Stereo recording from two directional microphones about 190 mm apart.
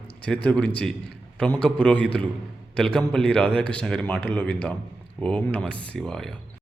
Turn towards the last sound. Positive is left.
turn(degrees=0)  # may be behind; listen again after turning